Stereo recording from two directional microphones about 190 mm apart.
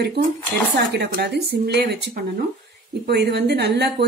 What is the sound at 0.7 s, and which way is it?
Speech, 60° right (ahead or behind).